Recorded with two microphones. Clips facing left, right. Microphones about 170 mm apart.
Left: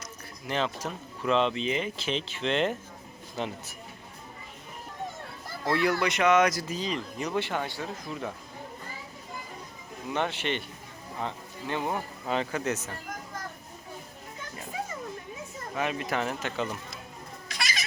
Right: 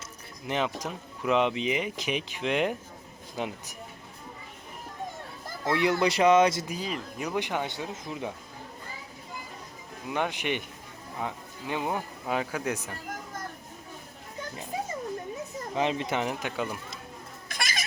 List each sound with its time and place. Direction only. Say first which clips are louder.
0.0 s speech: even; 15° right (ahead or behind)
5.6 s speech: right 1 dB; 20° right (ahead or behind)
6.1 s speech: right 3 dB; 30° right (ahead or behind)
6.7 s speech: left 2 dB; 10° right (ahead or behind)
10.1 s speech: even; 10° right (ahead or behind)
15.7 s speech: right 2 dB; 25° right (ahead or behind); by 16.7 s 10° right (ahead or behind)
17.5 s cat: right 1 dB; 50° right (ahead or behind)